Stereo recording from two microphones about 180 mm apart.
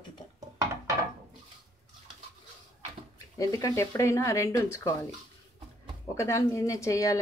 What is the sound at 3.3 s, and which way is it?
Speech, 20° left (ahead or behind).